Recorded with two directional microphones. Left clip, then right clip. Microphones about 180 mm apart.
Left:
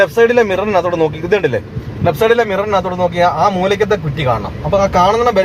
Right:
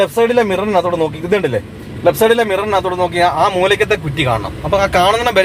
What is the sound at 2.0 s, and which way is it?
A man's voice, 55° right (ahead or behind).